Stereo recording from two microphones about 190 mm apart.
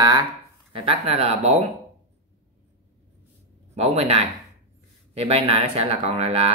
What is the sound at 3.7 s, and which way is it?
Speech, 35° right (ahead or behind).